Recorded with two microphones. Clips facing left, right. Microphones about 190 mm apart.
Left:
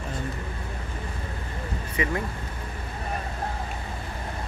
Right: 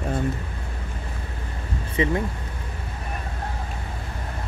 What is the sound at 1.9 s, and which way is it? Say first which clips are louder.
Speech: right 5 dB; 25° right (ahead or behind).